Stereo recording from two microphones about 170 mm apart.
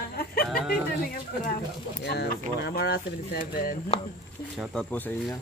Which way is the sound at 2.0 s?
75° left (ahead or behind).